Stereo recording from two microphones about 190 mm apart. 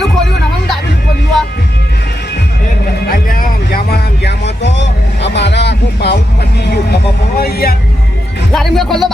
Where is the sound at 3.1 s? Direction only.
50° left (ahead or behind); by 6.2 s 65° left (ahead or behind).